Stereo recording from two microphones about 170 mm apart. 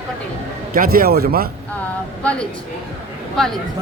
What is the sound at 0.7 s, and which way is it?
Speech, 55° right (ahead or behind).